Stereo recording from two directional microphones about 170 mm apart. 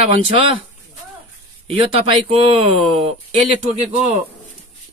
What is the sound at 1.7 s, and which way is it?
Speech, 35° right (ahead or behind).